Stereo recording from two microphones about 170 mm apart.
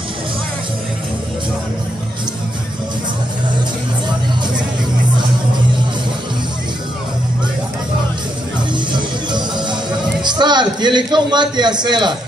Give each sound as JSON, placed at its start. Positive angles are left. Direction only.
{"t": 8.9, "sound": "music", "side_deg": -25}
{"t": 10.2, "sound": "a man's voice", "side_deg": -25}